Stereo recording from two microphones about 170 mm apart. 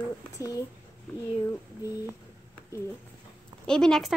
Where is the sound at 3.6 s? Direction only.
5° left (ahead or behind).